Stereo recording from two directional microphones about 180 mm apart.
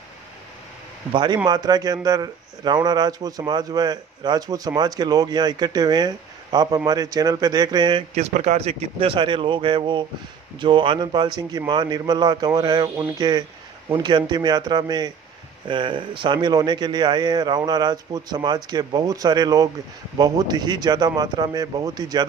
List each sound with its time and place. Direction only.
1.1 s a man's voice: 25° right (ahead or behind)
8.1 s a man's voice: 35° right (ahead or behind)